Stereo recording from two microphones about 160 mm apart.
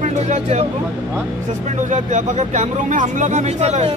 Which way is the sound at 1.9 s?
50° right (ahead or behind).